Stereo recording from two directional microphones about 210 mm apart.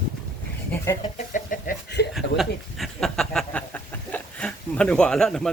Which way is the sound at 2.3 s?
Centre (ahead or behind).